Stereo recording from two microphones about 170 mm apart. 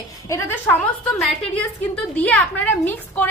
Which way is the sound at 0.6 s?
5° left (ahead or behind).